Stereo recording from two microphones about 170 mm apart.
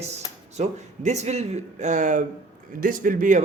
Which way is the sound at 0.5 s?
40° right (ahead or behind).